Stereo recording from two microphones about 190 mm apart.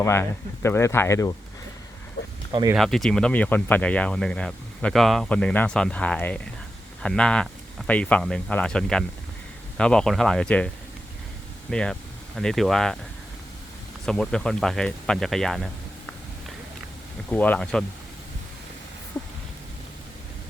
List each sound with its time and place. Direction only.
0.0 s speech: 15° left (ahead or behind)
2.2 s a sound: 60° left (ahead or behind)
2.5 s speech: 20° right (ahead or behind)
2.7 s speech: centre (ahead or behind)
11.7 s speech: 5° left (ahead or behind)
14.0 s speech: 5° left (ahead or behind)
17.2 s speech: 10° left (ahead or behind)